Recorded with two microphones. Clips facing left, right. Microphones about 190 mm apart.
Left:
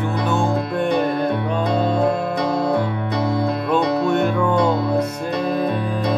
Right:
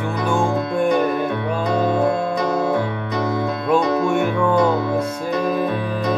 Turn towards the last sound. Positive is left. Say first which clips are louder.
# left 1 dB
turn(degrees=-10)  # may be behind; listen again after turning